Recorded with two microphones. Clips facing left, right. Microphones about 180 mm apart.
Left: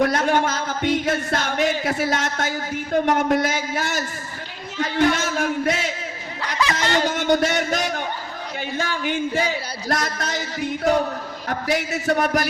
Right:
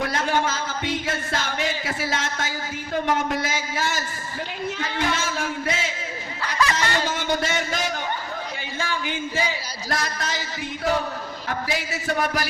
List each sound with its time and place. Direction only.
0.0 s speech: 50° left (ahead or behind)
6.4 s snicker: 20° left (ahead or behind)
7.0 s speech: 50° left (ahead or behind)